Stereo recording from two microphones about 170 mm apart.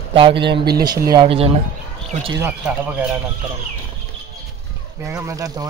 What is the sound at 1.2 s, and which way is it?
Speech, 35° right (ahead or behind).